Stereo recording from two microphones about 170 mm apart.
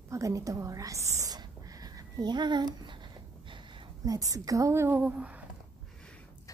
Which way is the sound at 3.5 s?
30° right (ahead or behind).